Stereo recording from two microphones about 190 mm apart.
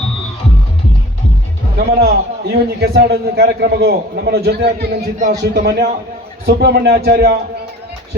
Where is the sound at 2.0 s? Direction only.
55° right (ahead or behind).